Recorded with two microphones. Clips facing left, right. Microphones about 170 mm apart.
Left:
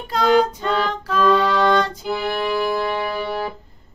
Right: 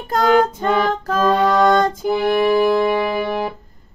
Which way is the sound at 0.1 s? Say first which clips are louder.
Right 2 dB; 50° right (ahead or behind).